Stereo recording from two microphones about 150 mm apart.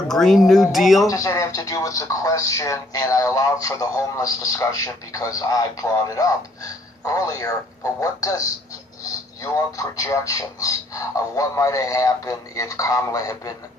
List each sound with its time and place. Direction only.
0.1 s speech: 5° left (ahead or behind)
1.0 s speech: 20° left (ahead or behind)